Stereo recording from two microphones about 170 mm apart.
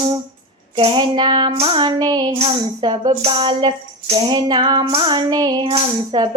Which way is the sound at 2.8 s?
30° right (ahead or behind).